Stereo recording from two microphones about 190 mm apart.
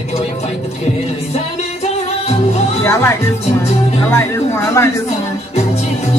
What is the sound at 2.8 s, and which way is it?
Music, 15° left (ahead or behind).